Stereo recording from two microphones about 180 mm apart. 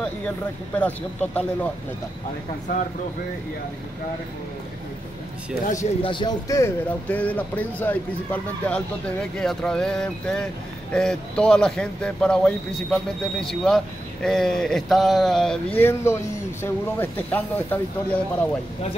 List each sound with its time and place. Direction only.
0.7 s speech: 10° left (ahead or behind)
5.7 s a man's voice: 40° left (ahead or behind)
6.0 s speech: 25° left (ahead or behind); by 17.7 s 10° left (ahead or behind)